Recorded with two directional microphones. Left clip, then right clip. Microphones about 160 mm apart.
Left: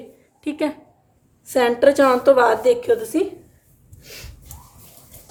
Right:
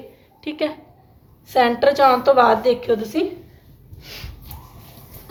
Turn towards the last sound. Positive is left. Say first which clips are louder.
# right 3 dB
turn(degrees=90)